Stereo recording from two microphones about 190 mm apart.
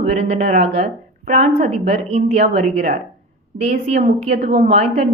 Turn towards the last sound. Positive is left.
turn(degrees=-35)  # may be behind; listen again after turning